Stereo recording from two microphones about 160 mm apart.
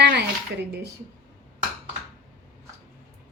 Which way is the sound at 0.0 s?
90° right.